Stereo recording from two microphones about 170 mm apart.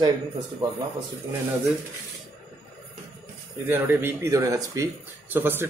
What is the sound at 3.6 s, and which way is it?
Speech, 15° right (ahead or behind).